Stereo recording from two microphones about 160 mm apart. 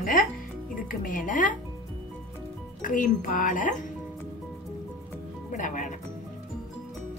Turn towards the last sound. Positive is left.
turn(degrees=50)  # may be behind; listen again after turning